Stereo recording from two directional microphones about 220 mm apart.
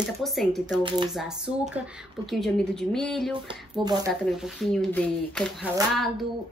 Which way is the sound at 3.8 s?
20° right (ahead or behind).